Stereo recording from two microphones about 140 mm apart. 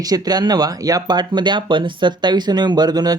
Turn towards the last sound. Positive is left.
turn(degrees=-30)  # may be behind; listen again after turning